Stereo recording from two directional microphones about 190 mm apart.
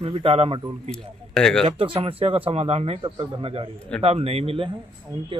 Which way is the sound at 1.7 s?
30° right (ahead or behind).